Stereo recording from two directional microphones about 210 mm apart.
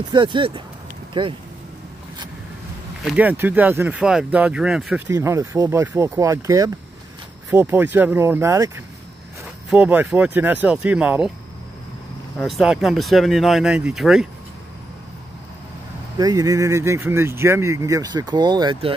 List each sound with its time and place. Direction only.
0.1 s speech: 20° right (ahead or behind)
3.1 s speech: 10° right (ahead or behind)
5.1 s speech: 15° right (ahead or behind)
12.4 s speech: centre (ahead or behind)
16.2 s speech: 15° right (ahead or behind)